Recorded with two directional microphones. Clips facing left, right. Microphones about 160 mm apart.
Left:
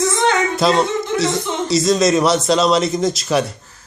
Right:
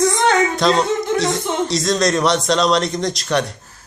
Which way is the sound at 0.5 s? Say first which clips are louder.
Left 1 dB; 5° left (ahead or behind).